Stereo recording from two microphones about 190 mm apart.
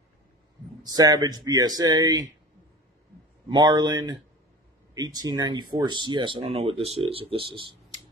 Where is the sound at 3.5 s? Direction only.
20° right (ahead or behind).